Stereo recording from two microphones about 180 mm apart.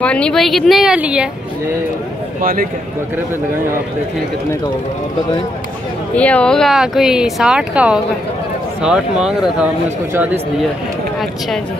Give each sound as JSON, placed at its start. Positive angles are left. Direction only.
{"t": 0.0, "sound": "speech", "side_deg": 5}
{"t": 2.4, "sound": "a man's voice", "side_deg": -50}
{"t": 6.1, "sound": "speech", "side_deg": 5}